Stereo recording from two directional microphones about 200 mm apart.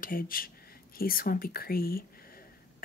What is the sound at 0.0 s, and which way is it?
Speech, 45° left (ahead or behind).